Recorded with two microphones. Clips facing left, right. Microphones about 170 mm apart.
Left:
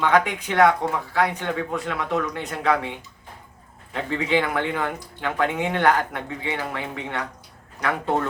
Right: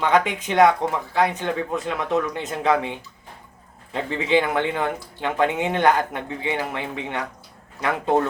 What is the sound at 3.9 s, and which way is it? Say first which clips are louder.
Speech: right 2 dB; 20° right (ahead or behind).